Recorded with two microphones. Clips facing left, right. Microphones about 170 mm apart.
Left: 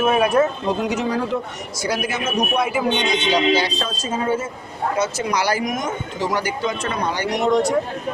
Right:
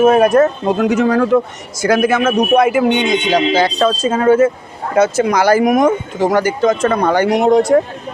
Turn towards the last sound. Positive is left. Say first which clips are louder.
# right 7 dB
turn(degrees=-50)  # may be behind; listen again after turning